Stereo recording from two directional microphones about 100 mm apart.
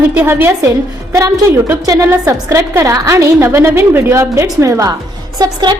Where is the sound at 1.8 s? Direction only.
35° right (ahead or behind).